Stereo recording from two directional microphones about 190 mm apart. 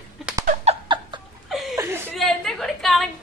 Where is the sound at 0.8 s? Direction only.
25° right (ahead or behind).